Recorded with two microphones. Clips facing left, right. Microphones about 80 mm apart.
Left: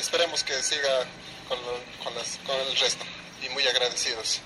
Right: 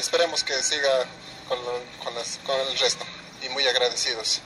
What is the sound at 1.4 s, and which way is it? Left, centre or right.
Speech, right.